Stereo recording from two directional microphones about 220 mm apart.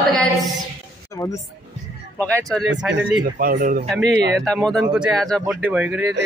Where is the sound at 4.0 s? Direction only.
50° right (ahead or behind).